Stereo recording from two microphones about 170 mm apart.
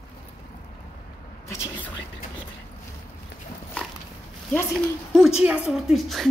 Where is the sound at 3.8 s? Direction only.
5° left (ahead or behind).